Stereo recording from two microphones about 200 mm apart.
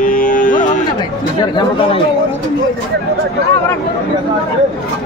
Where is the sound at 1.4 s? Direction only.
20° left (ahead or behind).